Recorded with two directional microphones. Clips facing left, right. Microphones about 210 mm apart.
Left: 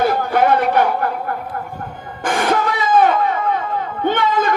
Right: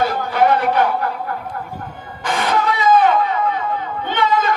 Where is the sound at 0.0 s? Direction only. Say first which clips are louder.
Left 1 dB; 50° left (ahead or behind).